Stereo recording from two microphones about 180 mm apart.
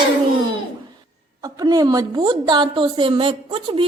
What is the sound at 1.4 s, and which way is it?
A woman's voice, 20° right (ahead or behind).